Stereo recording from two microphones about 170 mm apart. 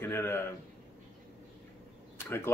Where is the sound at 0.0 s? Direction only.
15° left (ahead or behind).